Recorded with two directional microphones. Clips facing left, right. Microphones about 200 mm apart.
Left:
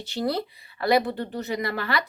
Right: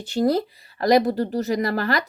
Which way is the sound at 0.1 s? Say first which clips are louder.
Right 7 dB; 45° right (ahead or behind).